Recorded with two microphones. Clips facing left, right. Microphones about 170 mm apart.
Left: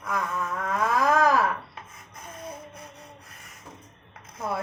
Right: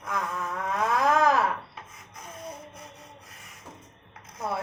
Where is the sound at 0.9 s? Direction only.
25° right (ahead or behind).